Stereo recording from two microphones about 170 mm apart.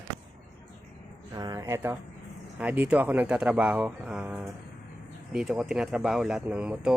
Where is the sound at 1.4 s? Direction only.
20° right (ahead or behind).